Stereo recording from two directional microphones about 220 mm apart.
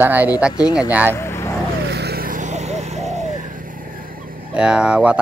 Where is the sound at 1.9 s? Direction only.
45° right (ahead or behind).